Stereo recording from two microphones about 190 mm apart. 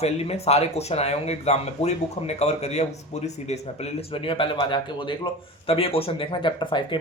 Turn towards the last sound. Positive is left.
turn(degrees=25)  # may be behind; listen again after turning